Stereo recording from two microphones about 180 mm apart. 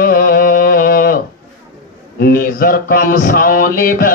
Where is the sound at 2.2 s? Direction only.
55° left (ahead or behind).